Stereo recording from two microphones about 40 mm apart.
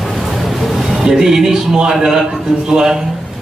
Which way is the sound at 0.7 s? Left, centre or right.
Centre.